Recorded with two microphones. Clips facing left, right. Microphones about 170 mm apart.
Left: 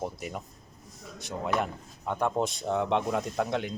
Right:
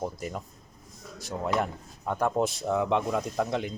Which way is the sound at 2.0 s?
5° right (ahead or behind).